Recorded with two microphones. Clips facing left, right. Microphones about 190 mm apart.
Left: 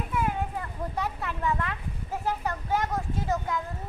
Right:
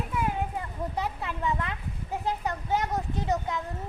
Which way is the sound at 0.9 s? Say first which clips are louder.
Left 1 dB; 20° right (ahead or behind).